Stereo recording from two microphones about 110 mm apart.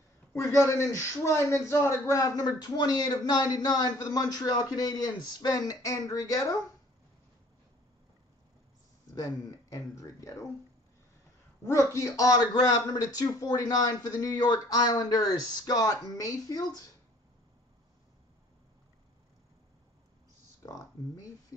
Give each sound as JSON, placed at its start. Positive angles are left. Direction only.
{"t": 0.3, "sound": "a man's voice", "side_deg": 25}
{"t": 9.1, "sound": "speech", "side_deg": 30}
{"t": 11.9, "sound": "a man's voice", "side_deg": 30}
{"t": 20.6, "sound": "speech", "side_deg": 30}